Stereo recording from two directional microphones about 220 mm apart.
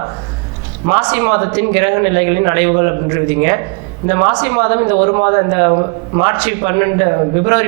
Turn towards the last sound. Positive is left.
turn(degrees=-20)  # may be behind; listen again after turning